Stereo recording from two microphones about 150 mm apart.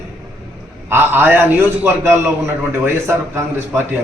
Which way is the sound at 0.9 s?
15° right (ahead or behind).